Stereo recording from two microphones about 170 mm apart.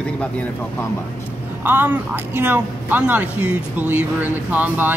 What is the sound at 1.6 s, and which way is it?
Speech, 10° right (ahead or behind).